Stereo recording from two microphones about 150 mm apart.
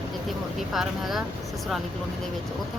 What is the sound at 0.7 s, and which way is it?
Speech, centre (ahead or behind).